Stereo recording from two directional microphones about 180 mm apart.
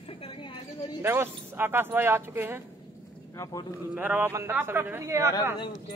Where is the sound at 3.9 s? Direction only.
10° right (ahead or behind).